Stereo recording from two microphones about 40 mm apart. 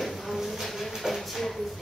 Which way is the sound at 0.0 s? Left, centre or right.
Centre.